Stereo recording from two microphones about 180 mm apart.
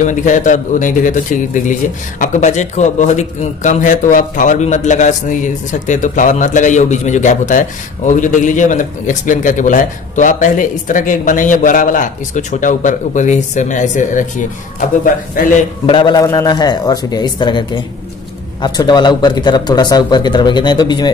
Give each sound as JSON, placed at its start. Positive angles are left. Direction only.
{"t": 0.0, "sound": "a man's voice", "side_deg": 45}
{"t": 15.3, "sound": "a man's voice", "side_deg": 45}
{"t": 15.9, "sound": "speech", "side_deg": 25}